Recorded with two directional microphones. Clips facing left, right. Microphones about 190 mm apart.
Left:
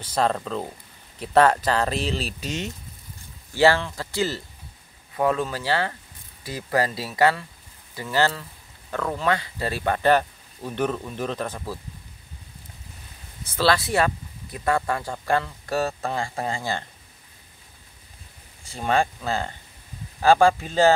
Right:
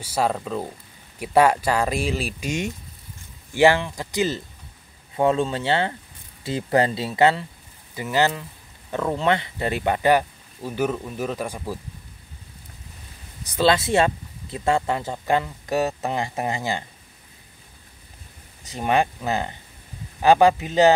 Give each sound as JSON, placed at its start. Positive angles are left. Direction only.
{"t": 0.0, "sound": "speech", "side_deg": -10}
{"t": 13.5, "sound": "speech", "side_deg": -20}
{"t": 18.7, "sound": "speech", "side_deg": -15}